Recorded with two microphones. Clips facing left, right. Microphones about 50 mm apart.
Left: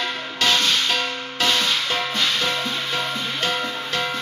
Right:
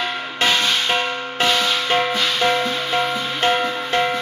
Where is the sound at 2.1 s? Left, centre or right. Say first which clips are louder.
Right 4 dB; centre.